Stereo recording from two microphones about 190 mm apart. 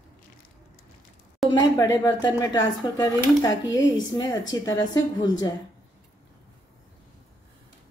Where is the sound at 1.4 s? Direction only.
20° left (ahead or behind).